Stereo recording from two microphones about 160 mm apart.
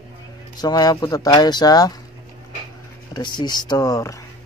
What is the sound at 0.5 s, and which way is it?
Speech, 25° left (ahead or behind).